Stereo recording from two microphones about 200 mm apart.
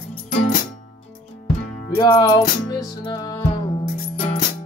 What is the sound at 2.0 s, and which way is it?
Music, 20° left (ahead or behind).